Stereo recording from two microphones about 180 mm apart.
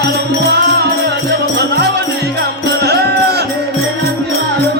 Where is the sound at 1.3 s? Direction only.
65° right (ahead or behind).